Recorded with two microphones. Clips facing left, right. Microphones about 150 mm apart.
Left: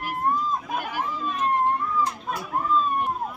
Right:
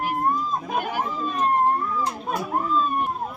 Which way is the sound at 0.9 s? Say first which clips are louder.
Right 2 dB; 40° right (ahead or behind).